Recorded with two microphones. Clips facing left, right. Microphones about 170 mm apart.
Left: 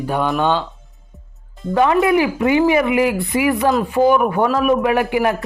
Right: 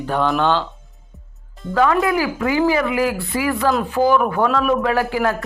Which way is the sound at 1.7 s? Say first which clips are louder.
Left 3 dB; 20° left (ahead or behind).